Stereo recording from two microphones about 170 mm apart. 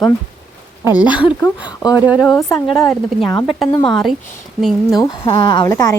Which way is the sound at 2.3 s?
20° left (ahead or behind).